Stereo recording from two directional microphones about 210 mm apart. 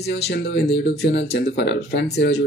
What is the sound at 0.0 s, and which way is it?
Speech, 55° left (ahead or behind).